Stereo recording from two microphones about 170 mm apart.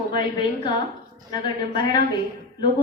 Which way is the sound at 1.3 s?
25° left (ahead or behind).